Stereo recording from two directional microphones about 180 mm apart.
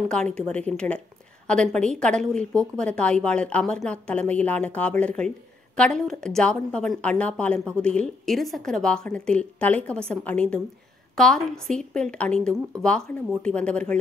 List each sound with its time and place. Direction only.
0.1 s a woman's voice: 5° left (ahead or behind)